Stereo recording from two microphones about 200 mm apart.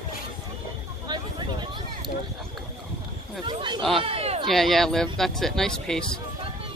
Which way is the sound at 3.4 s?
25° right (ahead or behind).